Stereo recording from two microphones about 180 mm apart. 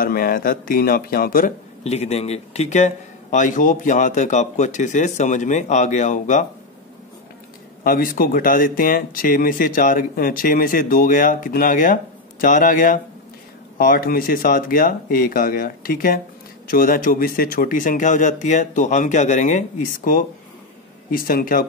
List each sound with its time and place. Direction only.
0.0 s speech: 55° left (ahead or behind)
1.9 s speech: 35° left (ahead or behind)
7.8 s speech: 50° left (ahead or behind)